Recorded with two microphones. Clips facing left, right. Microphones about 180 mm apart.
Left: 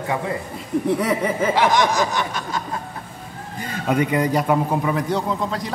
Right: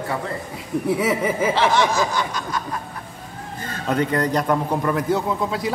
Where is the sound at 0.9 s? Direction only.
5° right (ahead or behind).